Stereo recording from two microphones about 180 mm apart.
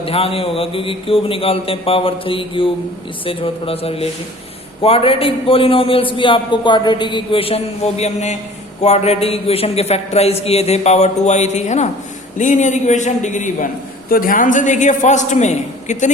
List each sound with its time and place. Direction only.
0.0 s a man's voice: 30° left (ahead or behind)